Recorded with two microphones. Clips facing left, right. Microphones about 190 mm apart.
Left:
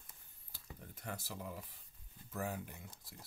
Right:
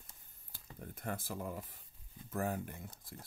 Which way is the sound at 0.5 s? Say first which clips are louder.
Right 4 dB; 50° right (ahead or behind).